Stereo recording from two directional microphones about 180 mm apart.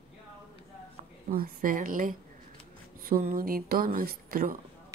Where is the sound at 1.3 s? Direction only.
50° right (ahead or behind).